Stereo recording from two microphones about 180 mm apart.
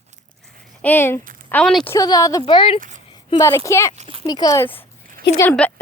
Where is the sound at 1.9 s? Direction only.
20° left (ahead or behind).